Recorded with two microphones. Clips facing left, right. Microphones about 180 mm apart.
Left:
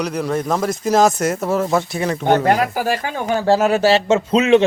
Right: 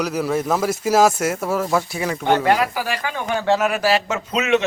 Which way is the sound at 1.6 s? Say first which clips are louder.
Left 2 dB; 25° left (ahead or behind).